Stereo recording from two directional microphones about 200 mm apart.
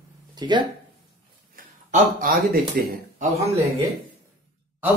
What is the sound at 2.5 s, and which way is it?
Speech, 45° right (ahead or behind).